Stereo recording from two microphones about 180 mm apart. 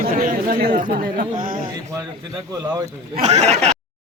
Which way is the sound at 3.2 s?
40° right (ahead or behind).